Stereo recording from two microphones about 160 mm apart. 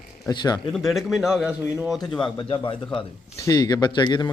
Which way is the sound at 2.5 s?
30° left (ahead or behind).